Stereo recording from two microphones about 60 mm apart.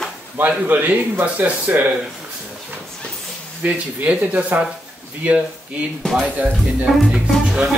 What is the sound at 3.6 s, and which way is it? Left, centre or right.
Speech, right.